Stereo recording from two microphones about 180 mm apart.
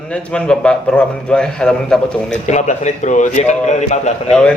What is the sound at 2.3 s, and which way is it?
A man's voice, 40° left (ahead or behind).